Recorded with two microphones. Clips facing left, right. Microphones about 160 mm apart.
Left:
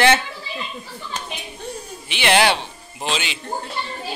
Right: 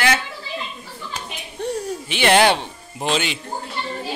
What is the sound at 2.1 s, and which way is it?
A man's voice, 45° right (ahead or behind).